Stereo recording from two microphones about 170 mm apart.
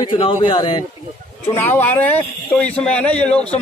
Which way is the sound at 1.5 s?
15° left (ahead or behind).